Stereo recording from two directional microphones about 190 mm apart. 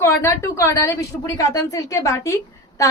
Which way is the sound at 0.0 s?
15° left (ahead or behind).